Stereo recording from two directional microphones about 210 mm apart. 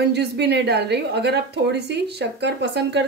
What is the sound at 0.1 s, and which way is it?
A woman's voice, 55° right (ahead or behind).